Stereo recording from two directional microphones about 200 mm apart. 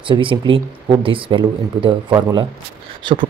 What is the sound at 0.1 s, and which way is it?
Speech, 25° right (ahead or behind).